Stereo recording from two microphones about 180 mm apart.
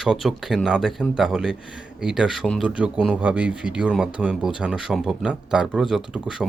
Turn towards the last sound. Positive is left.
turn(degrees=-5)  # may be behind; listen again after turning